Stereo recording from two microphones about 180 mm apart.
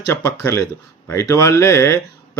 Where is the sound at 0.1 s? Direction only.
15° left (ahead or behind).